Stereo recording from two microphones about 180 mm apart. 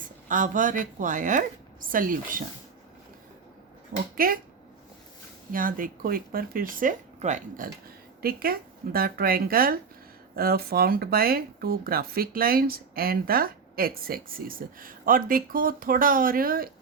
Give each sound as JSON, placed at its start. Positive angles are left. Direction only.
{"t": 0.3, "sound": "speech", "side_deg": -45}
{"t": 3.9, "sound": "speech", "side_deg": -55}
{"t": 5.5, "sound": "speech", "side_deg": -50}